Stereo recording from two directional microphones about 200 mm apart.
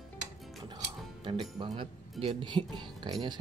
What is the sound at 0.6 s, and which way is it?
Music, 25° right (ahead or behind).